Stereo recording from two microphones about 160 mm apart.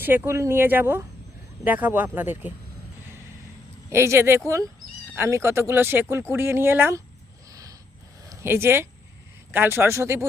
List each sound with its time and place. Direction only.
0.0 s speech: 15° right (ahead or behind)
3.8 s speech: 15° right (ahead or behind)
7.5 s a sound: 20° right (ahead or behind)
8.2 s speech: 20° right (ahead or behind)